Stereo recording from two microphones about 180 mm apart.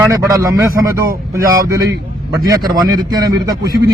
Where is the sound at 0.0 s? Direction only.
20° right (ahead or behind).